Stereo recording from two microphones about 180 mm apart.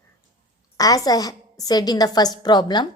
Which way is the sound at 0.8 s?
20° left (ahead or behind).